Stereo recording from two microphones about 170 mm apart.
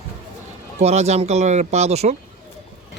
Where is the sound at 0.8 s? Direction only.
40° right (ahead or behind).